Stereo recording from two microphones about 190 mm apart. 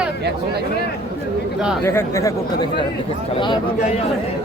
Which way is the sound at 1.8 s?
15° left (ahead or behind).